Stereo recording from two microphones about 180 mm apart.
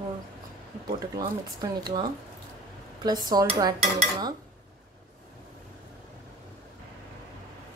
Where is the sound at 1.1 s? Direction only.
20° right (ahead or behind).